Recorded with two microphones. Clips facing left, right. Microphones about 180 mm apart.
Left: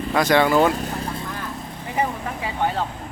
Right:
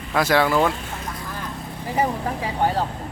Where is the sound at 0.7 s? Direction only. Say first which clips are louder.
Left 5 dB; 40° left (ahead or behind).